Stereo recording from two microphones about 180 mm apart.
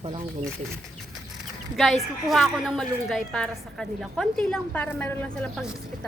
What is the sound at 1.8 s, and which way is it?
A woman's voice, centre (ahead or behind).